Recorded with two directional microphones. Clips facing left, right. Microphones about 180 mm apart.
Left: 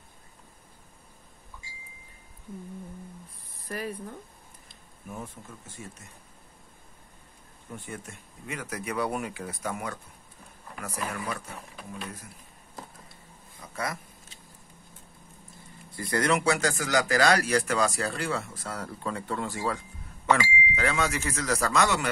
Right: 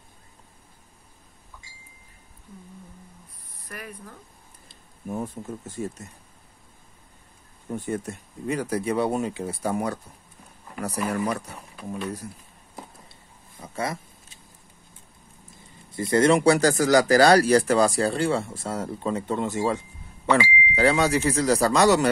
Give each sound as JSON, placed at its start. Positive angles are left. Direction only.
{"t": 3.5, "sound": "speech", "side_deg": 30}
{"t": 4.6, "sound": "speech", "side_deg": -40}
{"t": 7.7, "sound": "speech", "side_deg": -40}
{"t": 13.6, "sound": "a sound", "side_deg": -25}
{"t": 15.9, "sound": "speech", "side_deg": -25}
{"t": 20.7, "sound": "speech", "side_deg": -35}